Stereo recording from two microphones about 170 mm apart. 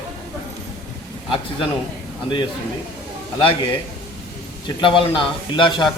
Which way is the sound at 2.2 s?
30° left (ahead or behind).